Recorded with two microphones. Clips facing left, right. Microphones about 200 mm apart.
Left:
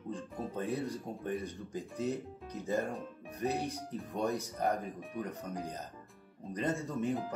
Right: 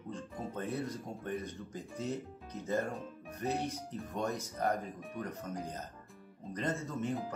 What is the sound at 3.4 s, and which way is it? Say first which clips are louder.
Speech: left 1 dB; 15° left (ahead or behind).